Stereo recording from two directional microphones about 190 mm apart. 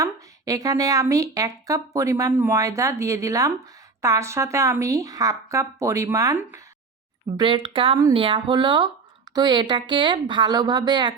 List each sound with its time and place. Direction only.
0.0 s speech: 20° right (ahead or behind)
7.3 s speech: 25° right (ahead or behind)